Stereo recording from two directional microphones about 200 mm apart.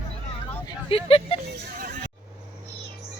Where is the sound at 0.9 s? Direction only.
30° left (ahead or behind).